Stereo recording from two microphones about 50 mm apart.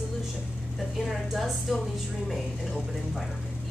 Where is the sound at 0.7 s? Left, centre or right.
Centre.